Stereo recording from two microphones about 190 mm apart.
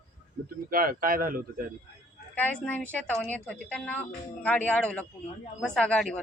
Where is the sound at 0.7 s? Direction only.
50° right (ahead or behind).